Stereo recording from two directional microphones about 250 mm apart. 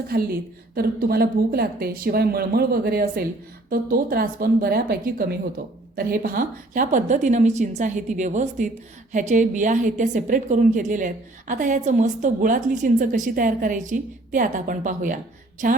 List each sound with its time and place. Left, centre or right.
0.1 s a woman's voice: right